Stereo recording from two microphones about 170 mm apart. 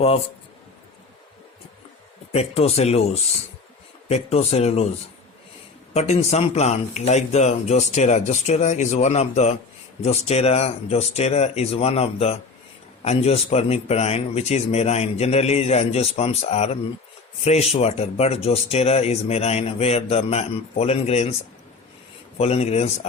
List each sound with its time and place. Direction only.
2.3 s speech: 35° left (ahead or behind)
5.9 s speech: 40° left (ahead or behind)
22.4 s speech: 35° left (ahead or behind)